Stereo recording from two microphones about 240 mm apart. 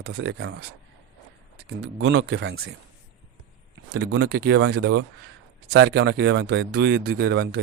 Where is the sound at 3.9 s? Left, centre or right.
Right.